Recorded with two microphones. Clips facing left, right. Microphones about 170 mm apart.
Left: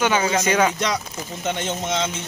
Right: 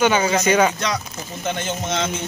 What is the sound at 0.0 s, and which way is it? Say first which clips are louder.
Speech: right 2 dB; centre (ahead or behind).